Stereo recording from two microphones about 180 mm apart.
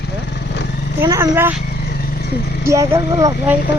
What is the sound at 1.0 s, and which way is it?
Speech, 15° right (ahead or behind).